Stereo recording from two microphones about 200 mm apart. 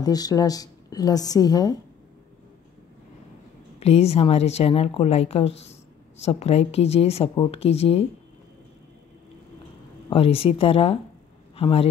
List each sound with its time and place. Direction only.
0.0 s a woman's voice: 20° left (ahead or behind)
3.8 s a woman's voice: 30° left (ahead or behind)
10.0 s a woman's voice: 30° left (ahead or behind)